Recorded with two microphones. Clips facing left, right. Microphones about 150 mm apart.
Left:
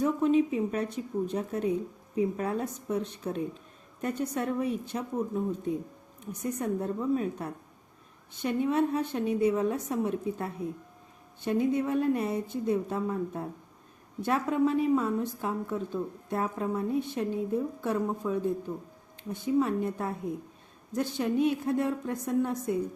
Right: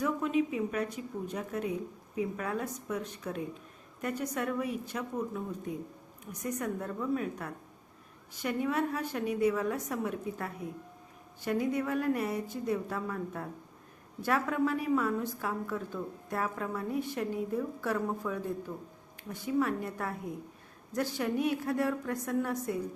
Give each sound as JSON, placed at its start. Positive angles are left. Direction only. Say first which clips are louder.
{"t": 0.0, "sound": "a woman's voice", "louder": "left 5 dB", "side_deg": 30}